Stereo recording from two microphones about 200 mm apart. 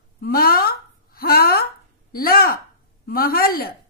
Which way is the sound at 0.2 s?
50° left (ahead or behind).